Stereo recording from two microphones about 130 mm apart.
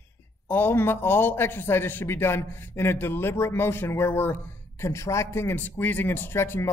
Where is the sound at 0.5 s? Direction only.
15° left (ahead or behind).